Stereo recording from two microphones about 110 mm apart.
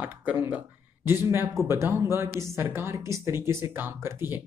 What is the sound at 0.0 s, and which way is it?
Speech, 15° right (ahead or behind).